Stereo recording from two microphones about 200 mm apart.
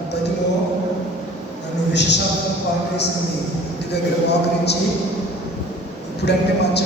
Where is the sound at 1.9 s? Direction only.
60° left (ahead or behind).